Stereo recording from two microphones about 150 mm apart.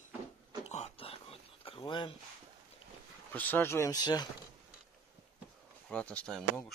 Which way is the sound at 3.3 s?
10° left (ahead or behind).